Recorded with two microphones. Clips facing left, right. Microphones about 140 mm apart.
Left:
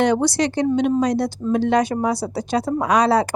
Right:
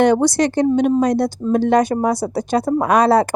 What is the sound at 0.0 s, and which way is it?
A woman's voice, 50° right (ahead or behind).